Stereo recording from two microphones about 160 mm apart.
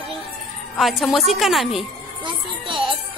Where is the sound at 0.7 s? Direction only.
Centre (ahead or behind).